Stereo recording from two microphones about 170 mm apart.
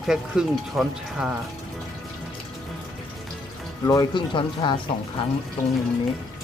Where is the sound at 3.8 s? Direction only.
20° left (ahead or behind).